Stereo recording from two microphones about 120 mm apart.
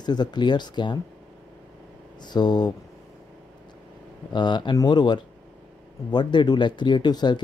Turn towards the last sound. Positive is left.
turn(degrees=35)  # may be behind; listen again after turning